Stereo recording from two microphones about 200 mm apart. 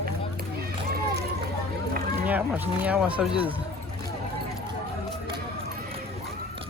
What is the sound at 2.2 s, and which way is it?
Speech, 10° right (ahead or behind).